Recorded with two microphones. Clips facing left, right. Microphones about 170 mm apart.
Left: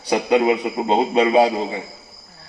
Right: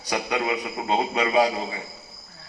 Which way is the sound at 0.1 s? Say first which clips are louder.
Left 9 dB; 25° left (ahead or behind).